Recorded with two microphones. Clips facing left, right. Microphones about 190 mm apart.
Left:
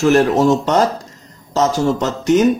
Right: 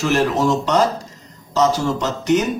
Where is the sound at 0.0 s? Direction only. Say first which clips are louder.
Left 5 dB; 50° left (ahead or behind).